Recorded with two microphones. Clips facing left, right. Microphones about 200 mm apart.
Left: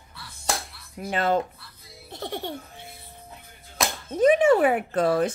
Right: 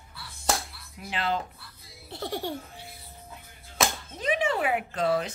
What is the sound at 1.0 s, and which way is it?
Speech, 45° left (ahead or behind).